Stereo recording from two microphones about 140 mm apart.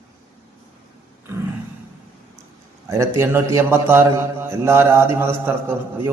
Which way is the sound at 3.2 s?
20° right (ahead or behind).